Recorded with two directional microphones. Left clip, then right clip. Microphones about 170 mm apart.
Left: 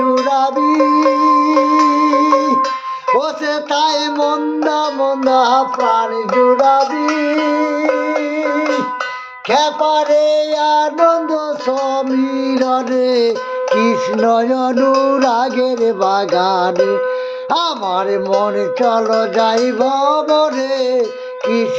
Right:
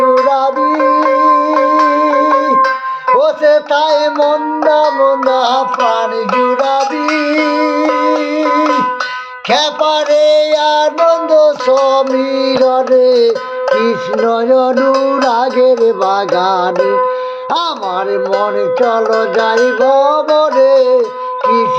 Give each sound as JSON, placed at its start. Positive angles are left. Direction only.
{"t": 0.3, "sound": "music", "side_deg": 10}
{"t": 1.9, "sound": "music", "side_deg": 15}
{"t": 2.3, "sound": "music", "side_deg": -35}
{"t": 3.2, "sound": "music", "side_deg": 15}
{"t": 6.3, "sound": "music", "side_deg": -20}
{"t": 9.5, "sound": "a sound", "side_deg": 15}
{"t": 13.7, "sound": "music", "side_deg": 10}
{"t": 18.3, "sound": "music", "side_deg": 10}